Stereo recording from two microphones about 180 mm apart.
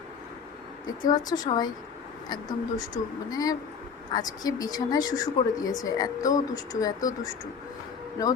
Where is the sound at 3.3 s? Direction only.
20° left (ahead or behind).